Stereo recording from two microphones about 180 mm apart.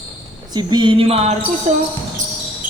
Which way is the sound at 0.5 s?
25° right (ahead or behind).